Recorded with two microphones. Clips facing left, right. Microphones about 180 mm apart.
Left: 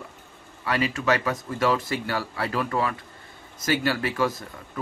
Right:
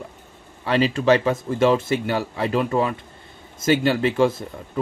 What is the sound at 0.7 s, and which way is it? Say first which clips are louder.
Speech: right 6 dB; 25° right (ahead or behind).